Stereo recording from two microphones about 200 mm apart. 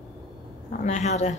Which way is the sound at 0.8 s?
35° left (ahead or behind).